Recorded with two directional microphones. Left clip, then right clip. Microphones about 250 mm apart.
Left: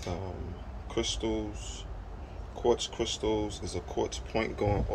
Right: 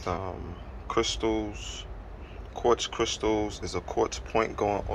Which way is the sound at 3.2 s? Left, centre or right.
Right.